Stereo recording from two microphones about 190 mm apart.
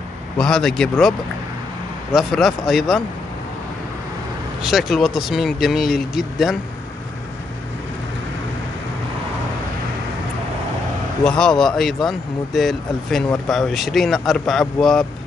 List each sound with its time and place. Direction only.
0.4 s speech: 5° left (ahead or behind)
2.1 s speech: centre (ahead or behind)
4.6 s speech: centre (ahead or behind)
11.2 s speech: 5° left (ahead or behind)